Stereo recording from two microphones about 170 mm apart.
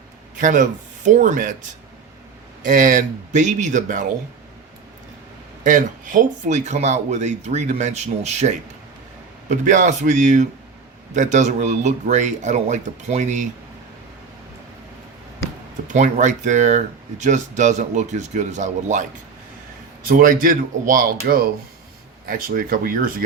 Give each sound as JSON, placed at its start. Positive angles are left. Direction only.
{"t": 0.3, "sound": "speech", "side_deg": -50}
{"t": 2.6, "sound": "speech", "side_deg": -50}
{"t": 5.6, "sound": "speech", "side_deg": -50}
{"t": 15.9, "sound": "speech", "side_deg": -45}
{"t": 20.1, "sound": "speech", "side_deg": -55}